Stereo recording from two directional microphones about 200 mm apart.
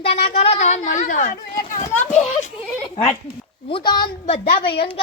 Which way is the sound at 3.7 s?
20° left (ahead or behind).